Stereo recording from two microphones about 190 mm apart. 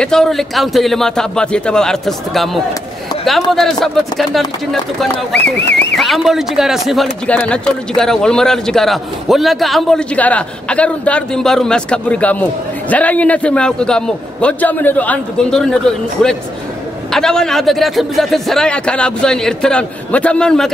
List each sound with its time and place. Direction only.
0.0 s a man's voice: 5° left (ahead or behind)
5.3 s speech: 65° left (ahead or behind)
5.9 s a man's voice: centre (ahead or behind)